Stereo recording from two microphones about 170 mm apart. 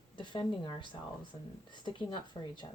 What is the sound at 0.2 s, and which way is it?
A woman's voice, 30° left (ahead or behind).